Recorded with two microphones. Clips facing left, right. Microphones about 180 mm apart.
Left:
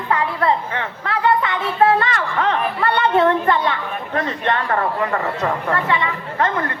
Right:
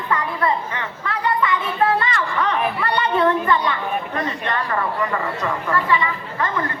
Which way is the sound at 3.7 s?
60° left (ahead or behind).